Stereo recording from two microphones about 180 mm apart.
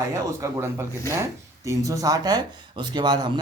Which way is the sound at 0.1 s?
15° right (ahead or behind).